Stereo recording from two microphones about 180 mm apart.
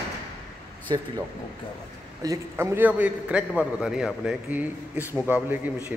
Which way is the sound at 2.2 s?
15° right (ahead or behind).